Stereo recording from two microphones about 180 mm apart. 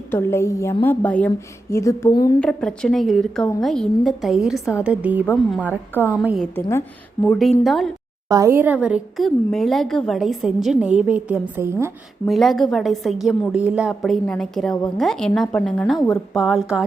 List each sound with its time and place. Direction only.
0.1 s a woman's voice: 15° left (ahead or behind)
2.4 s a woman's voice: 5° left (ahead or behind)
6.6 s a woman's voice: 15° left (ahead or behind)
7.3 s a woman's voice: centre (ahead or behind)
8.3 s a woman's voice: 15° right (ahead or behind)
12.3 s a woman's voice: centre (ahead or behind)